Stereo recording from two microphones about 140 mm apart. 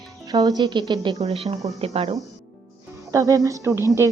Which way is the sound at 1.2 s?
50° right (ahead or behind).